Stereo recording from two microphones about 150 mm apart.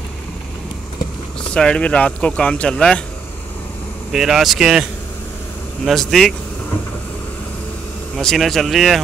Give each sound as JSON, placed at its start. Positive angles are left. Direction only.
{"t": 1.5, "sound": "speech", "side_deg": 5}
{"t": 4.1, "sound": "speech", "side_deg": -5}
{"t": 5.9, "sound": "speech", "side_deg": 0}
{"t": 8.2, "sound": "speech", "side_deg": 5}